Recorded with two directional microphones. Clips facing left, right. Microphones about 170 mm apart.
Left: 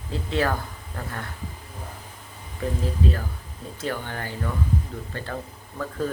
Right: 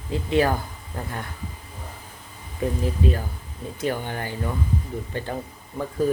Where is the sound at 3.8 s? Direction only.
20° right (ahead or behind).